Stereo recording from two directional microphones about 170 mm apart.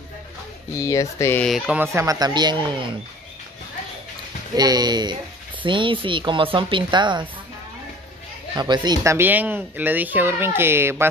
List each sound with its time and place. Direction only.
0.7 s speech: 15° left (ahead or behind)
1.4 s speech: centre (ahead or behind)
1.8 s speech: 20° right (ahead or behind)
4.6 s speech: 25° right (ahead or behind)
8.5 s speech: 25° right (ahead or behind)